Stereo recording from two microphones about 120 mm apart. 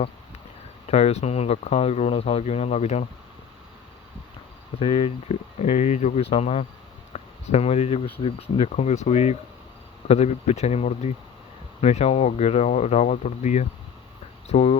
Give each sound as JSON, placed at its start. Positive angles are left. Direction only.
{"t": 0.9, "sound": "speech", "side_deg": 60}
{"t": 4.8, "sound": "speech", "side_deg": 60}
{"t": 14.4, "sound": "speech", "side_deg": 60}